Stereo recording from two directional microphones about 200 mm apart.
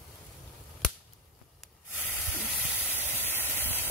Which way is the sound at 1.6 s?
10° left (ahead or behind).